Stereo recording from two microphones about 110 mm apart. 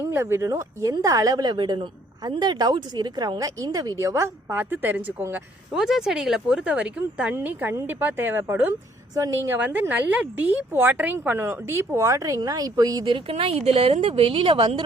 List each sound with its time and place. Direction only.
0.0 s speech: 25° right (ahead or behind)
5.7 s speech: 5° right (ahead or behind); by 13.1 s 35° right (ahead or behind)
13.1 s a woman's voice: 60° right (ahead or behind)